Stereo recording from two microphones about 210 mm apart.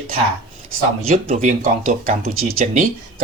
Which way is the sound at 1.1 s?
40° right (ahead or behind).